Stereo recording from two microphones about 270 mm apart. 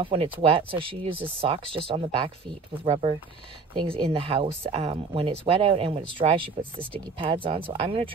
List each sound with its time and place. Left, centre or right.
0.0 s speech: right